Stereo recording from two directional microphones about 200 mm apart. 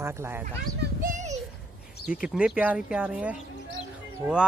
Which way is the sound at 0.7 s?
40° right (ahead or behind).